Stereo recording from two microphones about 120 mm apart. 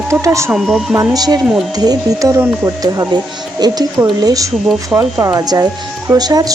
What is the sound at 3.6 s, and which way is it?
Speech, 35° right (ahead or behind).